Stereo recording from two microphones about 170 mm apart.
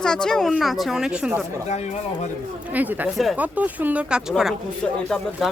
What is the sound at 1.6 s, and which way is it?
Speech, 40° left (ahead or behind).